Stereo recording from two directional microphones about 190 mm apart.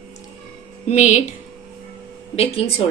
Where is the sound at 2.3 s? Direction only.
30° left (ahead or behind).